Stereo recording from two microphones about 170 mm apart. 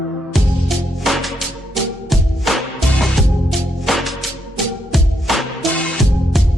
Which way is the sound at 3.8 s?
Centre (ahead or behind).